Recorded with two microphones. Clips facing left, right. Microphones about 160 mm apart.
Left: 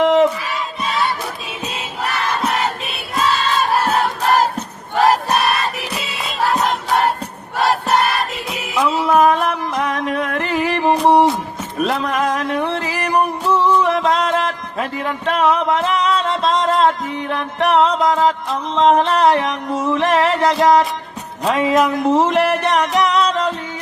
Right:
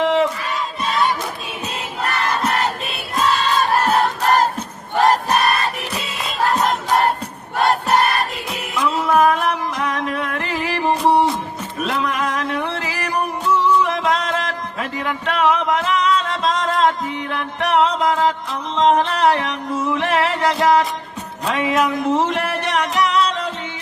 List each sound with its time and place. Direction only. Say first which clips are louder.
0.0 s battle cry: left 4 dB; 40° left (ahead or behind)
2.5 s battle cry: even; 5° left (ahead or behind)
4.9 s crowd: left 1 dB; 5° left (ahead or behind)
6.0 s music: even; centre (ahead or behind)
8.2 s music: left 1 dB; centre (ahead or behind)
9.0 s music: left 1 dB; 35° left (ahead or behind)
11.0 s music: left 3 dB; centre (ahead or behind)
11.8 s music: left 3 dB; 40° left (ahead or behind)
21.4 s speech: left 4 dB; 35° left (ahead or behind)
22.6 s music: left 3 dB; 35° left (ahead or behind)